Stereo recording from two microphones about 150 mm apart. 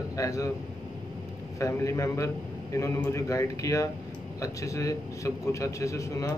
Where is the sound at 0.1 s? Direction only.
20° left (ahead or behind).